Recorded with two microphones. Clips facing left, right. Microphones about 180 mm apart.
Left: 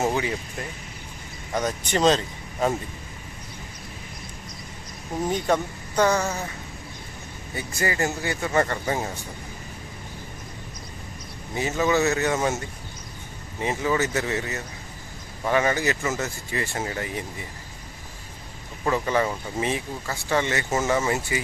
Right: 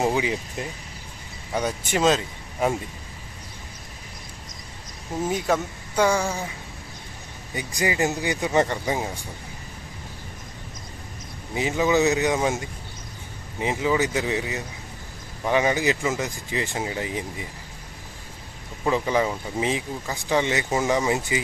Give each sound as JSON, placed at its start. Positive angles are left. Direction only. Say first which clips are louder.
{"t": 0.0, "sound": "speech", "louder": "right 1 dB", "side_deg": -15}
{"t": 1.5, "sound": "speech", "louder": "even", "side_deg": -10}
{"t": 5.2, "sound": "speech", "louder": "even", "side_deg": -5}
{"t": 7.5, "sound": "speech", "louder": "right 2 dB", "side_deg": -15}
{"t": 11.5, "sound": "speech", "louder": "right 1 dB", "side_deg": -15}
{"t": 18.9, "sound": "speech", "louder": "right 1 dB", "side_deg": -15}